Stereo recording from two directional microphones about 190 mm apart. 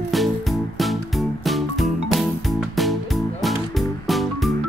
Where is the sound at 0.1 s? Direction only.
Centre (ahead or behind).